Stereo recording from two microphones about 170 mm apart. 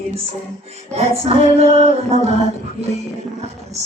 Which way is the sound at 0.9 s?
35° right (ahead or behind).